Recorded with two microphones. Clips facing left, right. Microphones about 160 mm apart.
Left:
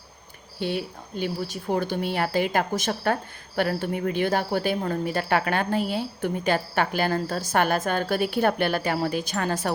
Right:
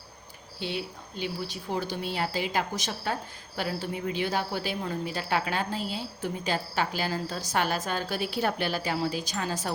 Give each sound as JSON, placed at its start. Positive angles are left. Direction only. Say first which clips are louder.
{"t": 0.6, "sound": "speech", "louder": "left 5 dB", "side_deg": 50}